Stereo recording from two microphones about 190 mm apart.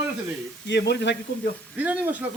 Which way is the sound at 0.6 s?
65° left (ahead or behind).